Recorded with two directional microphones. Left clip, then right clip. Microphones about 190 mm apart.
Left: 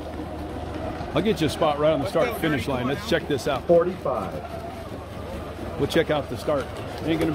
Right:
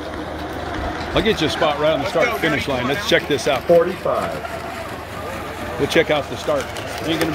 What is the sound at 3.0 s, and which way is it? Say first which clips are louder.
Speech: right 7 dB; 5° right (ahead or behind).